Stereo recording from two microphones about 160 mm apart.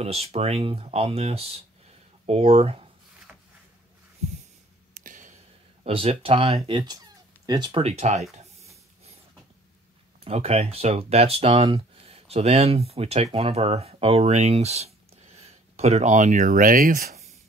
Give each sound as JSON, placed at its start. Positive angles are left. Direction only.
{"t": 0.0, "sound": "speech", "side_deg": -40}
{"t": 3.3, "sound": "a sound", "side_deg": -10}
{"t": 4.9, "sound": "a sound", "side_deg": -55}
{"t": 5.9, "sound": "speech", "side_deg": -35}
{"t": 7.4, "sound": "speech", "side_deg": -25}
{"t": 7.8, "sound": "speech", "side_deg": -40}
{"t": 10.2, "sound": "speech", "side_deg": -40}